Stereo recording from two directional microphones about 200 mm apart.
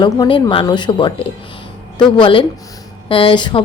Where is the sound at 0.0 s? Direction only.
25° left (ahead or behind).